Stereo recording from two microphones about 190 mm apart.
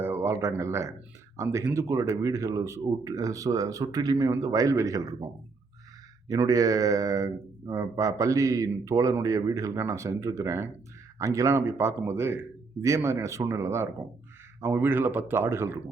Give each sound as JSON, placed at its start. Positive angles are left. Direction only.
{"t": 0.0, "sound": "speech", "side_deg": -10}
{"t": 6.2, "sound": "speech", "side_deg": -20}